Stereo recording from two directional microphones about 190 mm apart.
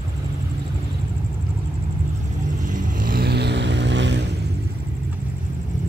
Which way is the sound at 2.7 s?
45° right (ahead or behind).